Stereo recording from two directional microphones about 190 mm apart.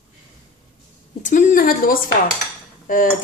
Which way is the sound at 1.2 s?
45° left (ahead or behind).